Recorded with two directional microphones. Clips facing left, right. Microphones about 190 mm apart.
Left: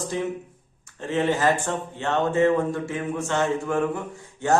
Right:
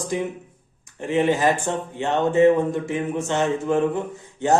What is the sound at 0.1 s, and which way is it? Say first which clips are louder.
A man's voice: right 3 dB; 15° right (ahead or behind).